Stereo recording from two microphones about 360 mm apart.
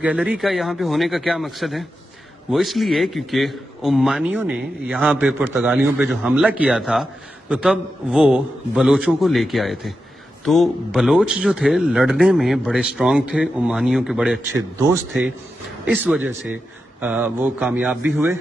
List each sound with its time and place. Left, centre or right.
0.0 s speech: centre